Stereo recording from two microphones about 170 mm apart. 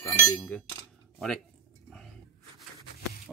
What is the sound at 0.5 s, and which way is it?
Speech, 10° left (ahead or behind).